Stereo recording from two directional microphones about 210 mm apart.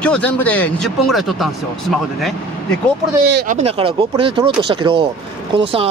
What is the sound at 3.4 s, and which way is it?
Speech, 30° right (ahead or behind).